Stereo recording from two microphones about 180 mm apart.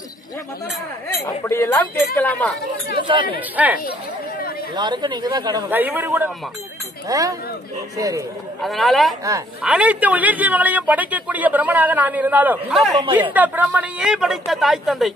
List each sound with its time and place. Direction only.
1.2 s speech: 15° left (ahead or behind)
3.0 s speech: 25° right (ahead or behind)
3.3 s a man's voice: 10° right (ahead or behind)
4.7 s speech: 25° right (ahead or behind)
5.7 s a man's voice: 10° right (ahead or behind)
8.6 s a man's voice: centre (ahead or behind)